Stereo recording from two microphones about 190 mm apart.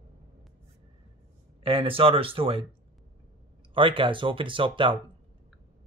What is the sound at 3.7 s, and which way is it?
Speech, 25° right (ahead or behind).